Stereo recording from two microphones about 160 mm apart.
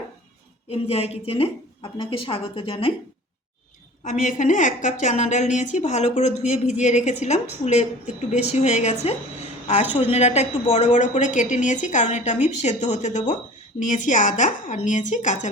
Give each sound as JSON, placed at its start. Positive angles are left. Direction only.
{"t": 0.7, "sound": "a woman's voice", "side_deg": 40}
{"t": 4.0, "sound": "a woman's voice", "side_deg": 50}